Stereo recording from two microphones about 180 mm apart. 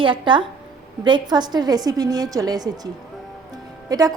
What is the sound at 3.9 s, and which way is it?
Speech, 20° right (ahead or behind).